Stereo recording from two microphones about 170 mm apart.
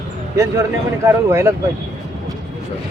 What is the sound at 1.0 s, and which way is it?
Speech, 15° right (ahead or behind).